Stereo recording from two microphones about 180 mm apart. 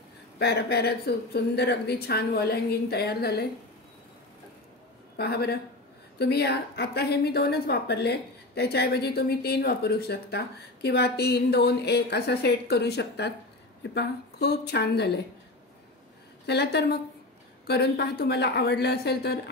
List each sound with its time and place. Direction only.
0.4 s a woman's voice: 65° left (ahead or behind)
5.1 s a woman's voice: 65° left (ahead or behind)
16.4 s a woman's voice: 65° left (ahead or behind)